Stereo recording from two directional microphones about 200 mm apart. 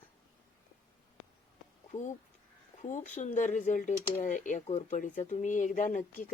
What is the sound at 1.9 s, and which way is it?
Speech, 35° left (ahead or behind).